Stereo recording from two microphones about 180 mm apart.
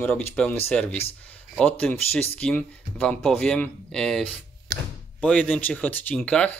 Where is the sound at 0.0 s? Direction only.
10° left (ahead or behind).